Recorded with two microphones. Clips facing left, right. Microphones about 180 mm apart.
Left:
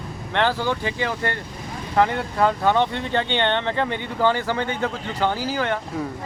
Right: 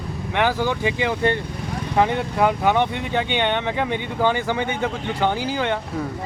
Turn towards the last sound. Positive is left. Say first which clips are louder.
# right 1 dB
turn(degrees=-20)  # may be behind; listen again after turning